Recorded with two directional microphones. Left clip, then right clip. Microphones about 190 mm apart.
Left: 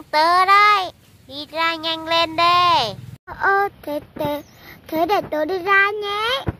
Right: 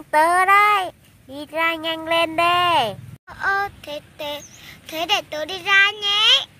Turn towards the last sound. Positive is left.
turn(degrees=40)  # may be behind; listen again after turning